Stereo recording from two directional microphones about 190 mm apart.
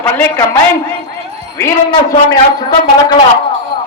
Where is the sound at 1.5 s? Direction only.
15° left (ahead or behind).